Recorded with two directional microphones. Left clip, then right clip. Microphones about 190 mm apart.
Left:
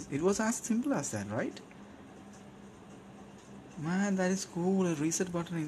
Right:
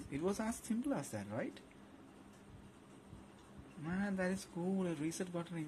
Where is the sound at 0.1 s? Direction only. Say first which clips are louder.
Left 9 dB; 5° left (ahead or behind).